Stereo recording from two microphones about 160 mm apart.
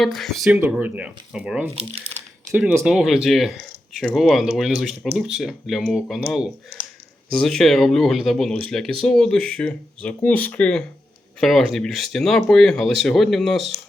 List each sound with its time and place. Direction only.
0.0 s speech: centre (ahead or behind)
1.7 s speech: 35° right (ahead or behind)
2.5 s speech: 10° right (ahead or behind)
7.3 s speech: centre (ahead or behind)